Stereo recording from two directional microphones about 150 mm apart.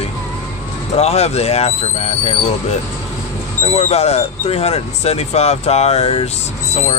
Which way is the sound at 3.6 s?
45° left (ahead or behind).